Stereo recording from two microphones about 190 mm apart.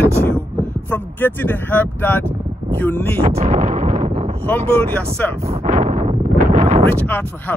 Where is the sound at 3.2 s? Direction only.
30° right (ahead or behind).